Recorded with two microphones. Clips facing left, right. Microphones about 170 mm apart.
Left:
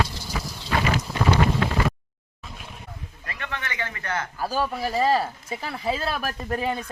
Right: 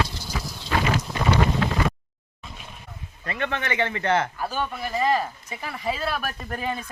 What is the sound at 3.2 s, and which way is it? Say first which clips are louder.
Speech: right 7 dB; 25° right (ahead or behind).